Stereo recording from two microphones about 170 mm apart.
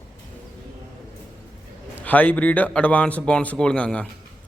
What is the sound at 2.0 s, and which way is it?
A man's voice, 10° left (ahead or behind).